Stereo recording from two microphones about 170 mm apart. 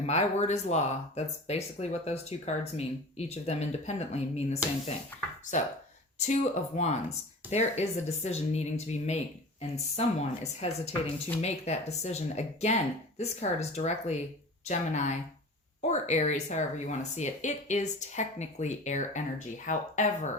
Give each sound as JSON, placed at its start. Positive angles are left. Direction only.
{"t": 0.0, "sound": "speech", "side_deg": 40}
{"t": 5.1, "sound": "speech", "side_deg": 10}
{"t": 6.1, "sound": "speech", "side_deg": 45}